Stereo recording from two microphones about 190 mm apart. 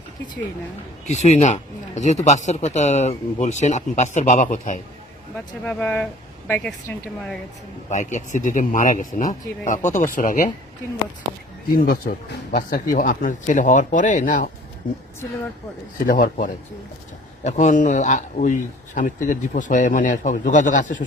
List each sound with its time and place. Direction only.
1.0 s speech: 35° left (ahead or behind)
5.6 s speech: 10° left (ahead or behind)
7.9 s speech: 40° left (ahead or behind)
11.7 s speech: 50° left (ahead or behind)
16.0 s speech: 50° left (ahead or behind)